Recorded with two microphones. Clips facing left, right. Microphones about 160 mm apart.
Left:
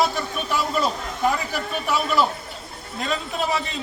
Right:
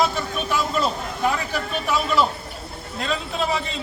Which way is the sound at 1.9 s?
5° left (ahead or behind).